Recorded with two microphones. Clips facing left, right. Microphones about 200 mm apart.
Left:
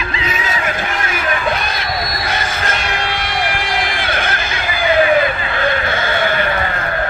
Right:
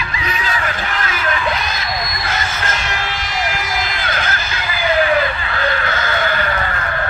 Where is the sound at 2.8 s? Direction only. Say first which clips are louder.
Left 3 dB; 55° left (ahead or behind).